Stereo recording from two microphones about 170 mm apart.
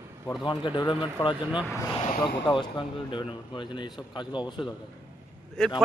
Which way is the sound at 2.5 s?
30° left (ahead or behind).